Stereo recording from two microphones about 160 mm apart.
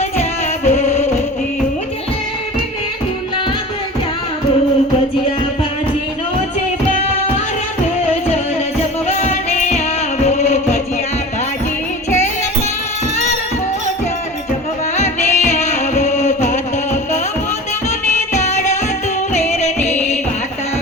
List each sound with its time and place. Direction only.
0.2 s music: 45° left (ahead or behind)
9.0 s music: 45° left (ahead or behind)
14.9 s music: 45° left (ahead or behind)
18.3 s music: 45° left (ahead or behind)